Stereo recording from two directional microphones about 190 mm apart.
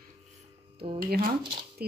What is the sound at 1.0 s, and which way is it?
Speech, 50° right (ahead or behind).